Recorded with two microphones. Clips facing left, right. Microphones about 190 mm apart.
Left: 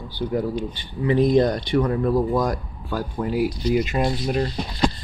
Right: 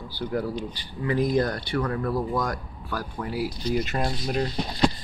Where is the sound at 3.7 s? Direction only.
10° left (ahead or behind).